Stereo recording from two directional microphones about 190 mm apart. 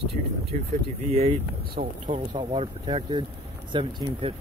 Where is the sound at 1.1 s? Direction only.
30° right (ahead or behind).